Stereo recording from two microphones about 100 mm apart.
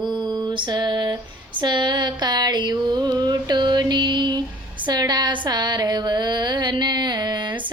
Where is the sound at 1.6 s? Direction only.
50° right (ahead or behind).